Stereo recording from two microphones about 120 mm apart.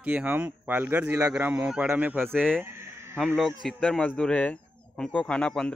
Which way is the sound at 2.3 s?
5° left (ahead or behind).